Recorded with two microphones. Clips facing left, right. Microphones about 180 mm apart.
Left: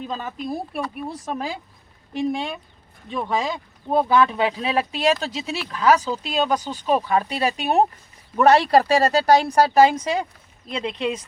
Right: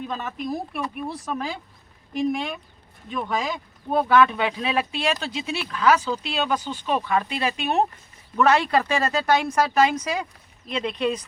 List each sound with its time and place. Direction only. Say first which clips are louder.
0.1 s speech: left 1 dB; 30° left (ahead or behind)